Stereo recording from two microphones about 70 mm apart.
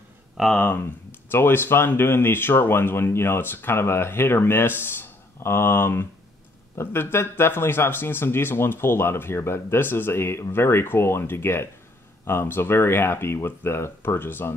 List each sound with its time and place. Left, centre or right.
0.6 s speech: left